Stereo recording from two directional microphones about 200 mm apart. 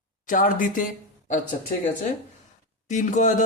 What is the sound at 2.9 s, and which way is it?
Speech, 40° left (ahead or behind).